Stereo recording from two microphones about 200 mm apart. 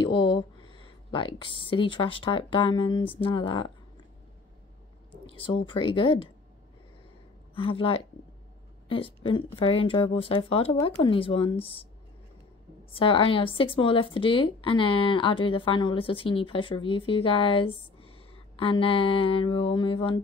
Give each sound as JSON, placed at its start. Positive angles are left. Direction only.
{"t": 0.0, "sound": "speech", "side_deg": 25}
{"t": 5.2, "sound": "speech", "side_deg": 25}
{"t": 7.5, "sound": "speech", "side_deg": 25}
{"t": 12.9, "sound": "speech", "side_deg": 25}